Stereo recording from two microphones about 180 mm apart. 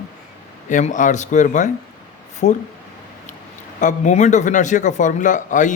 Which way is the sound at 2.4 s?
65° left (ahead or behind).